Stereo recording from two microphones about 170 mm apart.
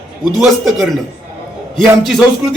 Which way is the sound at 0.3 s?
Centre (ahead or behind).